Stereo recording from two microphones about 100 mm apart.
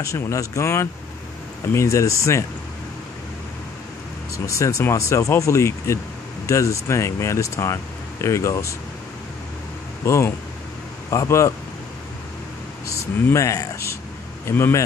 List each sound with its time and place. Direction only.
0.0 s speech: 30° left (ahead or behind)
4.5 s speech: 30° left (ahead or behind)
10.0 s speech: 30° left (ahead or behind)
12.8 s a sound: 30° left (ahead or behind)
14.4 s speech: 25° left (ahead or behind)